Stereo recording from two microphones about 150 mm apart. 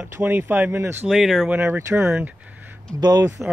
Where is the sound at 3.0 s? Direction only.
25° right (ahead or behind).